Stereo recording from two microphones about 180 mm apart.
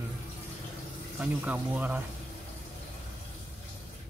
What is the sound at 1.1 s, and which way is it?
Speech, 10° right (ahead or behind).